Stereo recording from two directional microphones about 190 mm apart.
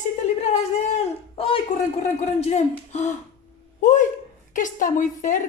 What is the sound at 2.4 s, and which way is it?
Speech, 35° left (ahead or behind).